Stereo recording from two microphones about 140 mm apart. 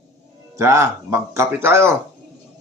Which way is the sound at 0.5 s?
20° right (ahead or behind).